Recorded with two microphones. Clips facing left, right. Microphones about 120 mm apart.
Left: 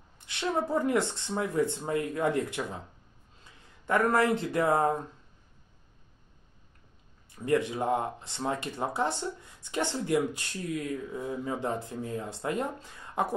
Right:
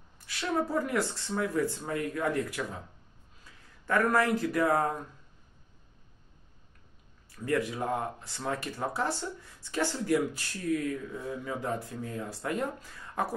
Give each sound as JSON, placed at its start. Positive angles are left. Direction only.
{"t": 0.2, "sound": "speech", "side_deg": 25}
{"t": 7.2, "sound": "speech", "side_deg": 20}